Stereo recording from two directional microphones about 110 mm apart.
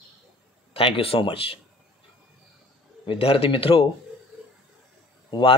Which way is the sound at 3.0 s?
55° left (ahead or behind).